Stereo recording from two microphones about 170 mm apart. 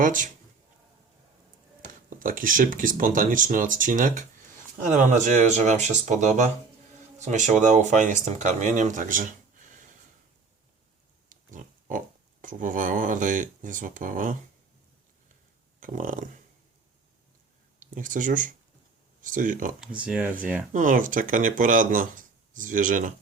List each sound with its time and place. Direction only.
0.0 s speech: 50° right (ahead or behind)
1.9 s speech: 50° right (ahead or behind)
11.3 s speech: 50° right (ahead or behind)
15.8 s speech: 50° right (ahead or behind)
17.7 s speech: 50° right (ahead or behind)
19.8 s speech: 5° right (ahead or behind)
20.7 s speech: 50° right (ahead or behind)